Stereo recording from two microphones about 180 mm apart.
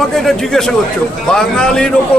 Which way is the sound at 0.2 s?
Centre (ahead or behind).